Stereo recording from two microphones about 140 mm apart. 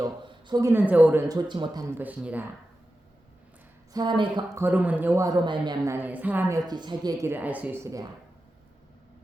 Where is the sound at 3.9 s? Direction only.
30° right (ahead or behind).